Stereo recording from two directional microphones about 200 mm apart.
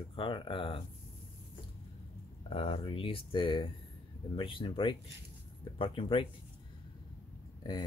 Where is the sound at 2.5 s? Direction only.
30° left (ahead or behind).